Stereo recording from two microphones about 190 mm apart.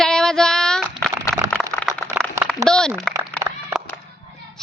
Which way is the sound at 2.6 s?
5° left (ahead or behind).